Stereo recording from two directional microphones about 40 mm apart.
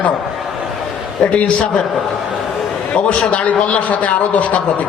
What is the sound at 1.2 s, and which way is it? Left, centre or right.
Speech, left.